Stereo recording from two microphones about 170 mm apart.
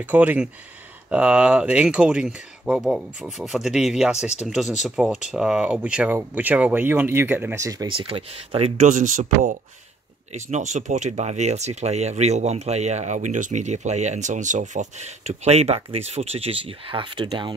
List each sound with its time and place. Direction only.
0.0 s speech: 10° right (ahead or behind); by 17.6 s 30° right (ahead or behind)